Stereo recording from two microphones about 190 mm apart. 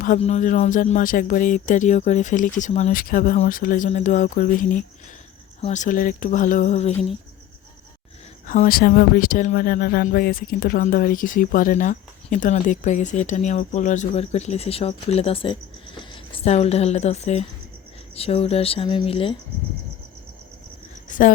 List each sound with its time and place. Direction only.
0.0 s speech: 40° left (ahead or behind)
5.6 s speech: 40° left (ahead or behind)
8.4 s speech: 45° left (ahead or behind); by 19.4 s 30° left (ahead or behind)
21.1 s a sound: 45° left (ahead or behind)